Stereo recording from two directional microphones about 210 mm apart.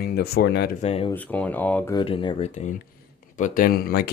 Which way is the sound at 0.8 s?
30° left (ahead or behind).